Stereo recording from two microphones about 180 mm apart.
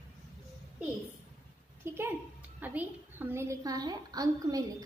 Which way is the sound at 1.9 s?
15° right (ahead or behind).